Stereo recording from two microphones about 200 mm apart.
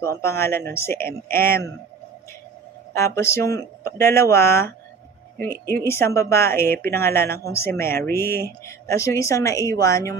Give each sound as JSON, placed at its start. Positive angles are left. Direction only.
{"t": 0.0, "sound": "speech", "side_deg": 15}
{"t": 2.9, "sound": "speech", "side_deg": 15}
{"t": 5.7, "sound": "speech", "side_deg": 15}